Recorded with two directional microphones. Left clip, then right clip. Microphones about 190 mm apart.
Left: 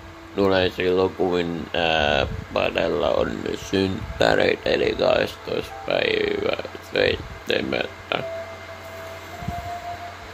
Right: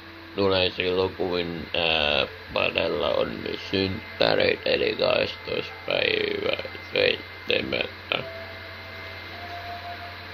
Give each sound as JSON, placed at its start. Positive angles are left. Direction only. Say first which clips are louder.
{"t": 0.4, "sound": "speech", "louder": "left 3 dB", "side_deg": 20}